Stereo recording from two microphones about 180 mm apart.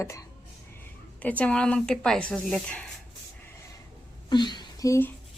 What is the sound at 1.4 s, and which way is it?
A woman's voice, 5° left (ahead or behind).